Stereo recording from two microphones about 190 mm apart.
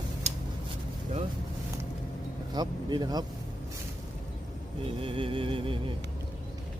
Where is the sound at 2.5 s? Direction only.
20° right (ahead or behind).